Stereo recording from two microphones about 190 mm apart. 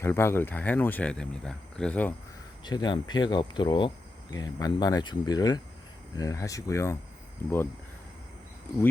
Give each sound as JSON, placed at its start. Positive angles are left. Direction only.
{"t": 0.0, "sound": "speech", "side_deg": 15}
{"t": 2.6, "sound": "speech", "side_deg": 20}